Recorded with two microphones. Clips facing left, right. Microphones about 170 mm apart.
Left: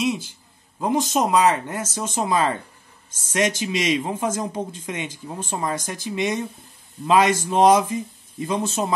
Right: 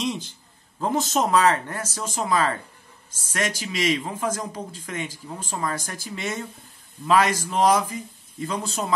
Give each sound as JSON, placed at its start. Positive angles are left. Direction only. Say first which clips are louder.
{"t": 0.0, "sound": "speech", "louder": "left 4 dB", "side_deg": 10}